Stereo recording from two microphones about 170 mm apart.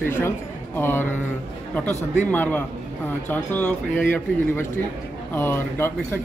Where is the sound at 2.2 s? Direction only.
10° left (ahead or behind).